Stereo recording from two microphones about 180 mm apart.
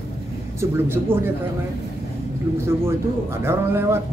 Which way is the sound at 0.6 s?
10° right (ahead or behind).